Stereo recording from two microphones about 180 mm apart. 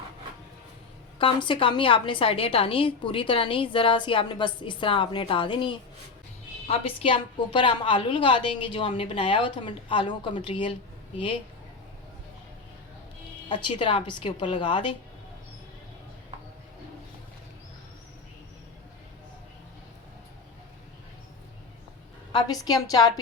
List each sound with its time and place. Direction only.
1.2 s a woman's voice: 30° left (ahead or behind)
13.5 s a woman's voice: 25° left (ahead or behind)
22.3 s a woman's voice: 25° left (ahead or behind)